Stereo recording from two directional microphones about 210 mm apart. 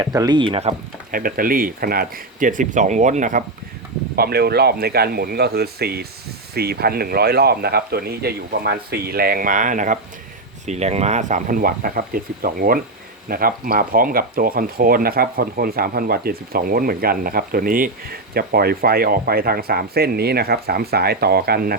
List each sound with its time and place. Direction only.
0.0 s speech: 20° right (ahead or behind); by 3.4 s 35° right (ahead or behind)
4.1 s speech: 50° right (ahead or behind)